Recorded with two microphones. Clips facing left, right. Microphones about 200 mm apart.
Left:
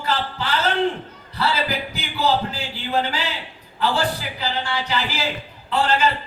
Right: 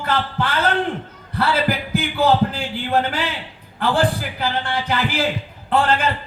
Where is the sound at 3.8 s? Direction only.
55° right (ahead or behind).